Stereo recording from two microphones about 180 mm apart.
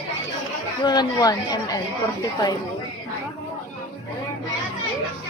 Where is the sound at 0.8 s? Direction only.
20° left (ahead or behind).